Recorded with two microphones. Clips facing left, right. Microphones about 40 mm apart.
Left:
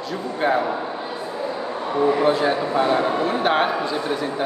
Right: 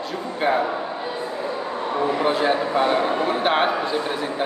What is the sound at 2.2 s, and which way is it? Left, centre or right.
Speech, centre.